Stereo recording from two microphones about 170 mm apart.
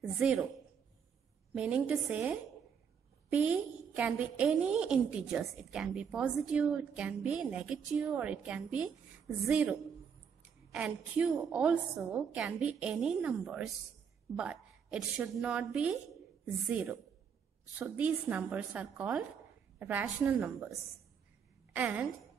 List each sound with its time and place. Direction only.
0.2 s a woman's voice: 5° right (ahead or behind)
1.5 s a woman's voice: 5° right (ahead or behind)
21.7 s speech: 10° right (ahead or behind)